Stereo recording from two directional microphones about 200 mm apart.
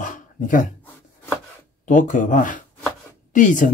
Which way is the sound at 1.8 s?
40° left (ahead or behind).